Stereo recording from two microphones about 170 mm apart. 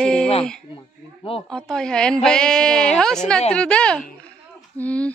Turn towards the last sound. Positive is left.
turn(degrees=10)  # may be behind; listen again after turning